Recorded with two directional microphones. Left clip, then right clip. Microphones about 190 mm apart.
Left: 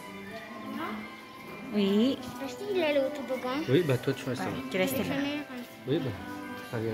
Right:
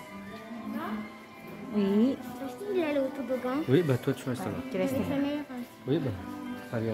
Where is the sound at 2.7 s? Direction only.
45° right (ahead or behind).